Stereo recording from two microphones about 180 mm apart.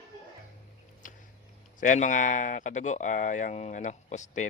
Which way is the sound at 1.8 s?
45° left (ahead or behind).